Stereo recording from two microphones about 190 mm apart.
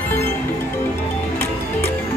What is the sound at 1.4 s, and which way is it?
Music, 10° left (ahead or behind).